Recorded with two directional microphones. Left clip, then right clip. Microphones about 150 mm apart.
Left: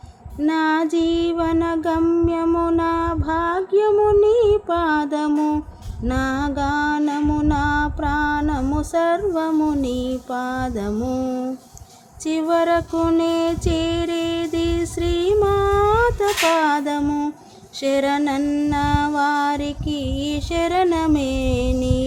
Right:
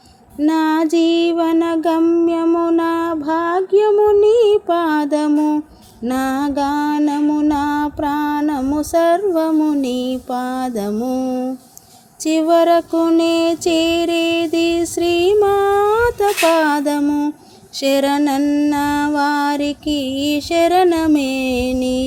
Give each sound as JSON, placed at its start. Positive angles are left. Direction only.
{"t": 0.3, "sound": "music", "side_deg": -25}
{"t": 2.5, "sound": "female singing", "side_deg": -20}
{"t": 6.1, "sound": "music", "side_deg": -25}
{"t": 9.5, "sound": "speech", "side_deg": -10}
{"t": 9.8, "sound": "music", "side_deg": -25}
{"t": 10.9, "sound": "a sound", "side_deg": -10}
{"t": 12.2, "sound": "music", "side_deg": -25}
{"t": 17.0, "sound": "speech", "side_deg": -15}
{"t": 17.8, "sound": "music", "side_deg": -25}